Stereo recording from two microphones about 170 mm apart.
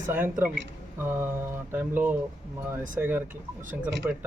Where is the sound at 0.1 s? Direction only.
10° right (ahead or behind).